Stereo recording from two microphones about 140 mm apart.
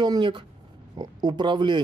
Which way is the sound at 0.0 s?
35° right (ahead or behind).